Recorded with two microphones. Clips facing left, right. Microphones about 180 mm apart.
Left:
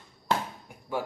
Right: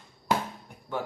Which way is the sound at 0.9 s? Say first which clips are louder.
Left 1 dB; 10° left (ahead or behind).